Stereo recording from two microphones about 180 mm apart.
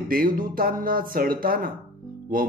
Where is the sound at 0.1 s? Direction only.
50° right (ahead or behind).